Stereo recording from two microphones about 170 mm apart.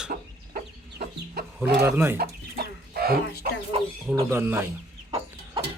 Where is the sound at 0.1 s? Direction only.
65° right (ahead or behind).